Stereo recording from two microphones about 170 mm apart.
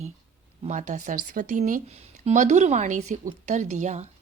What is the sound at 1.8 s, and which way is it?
A woman's voice, 40° right (ahead or behind).